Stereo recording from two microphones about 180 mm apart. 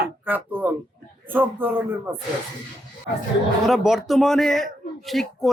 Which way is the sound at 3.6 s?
Centre (ahead or behind).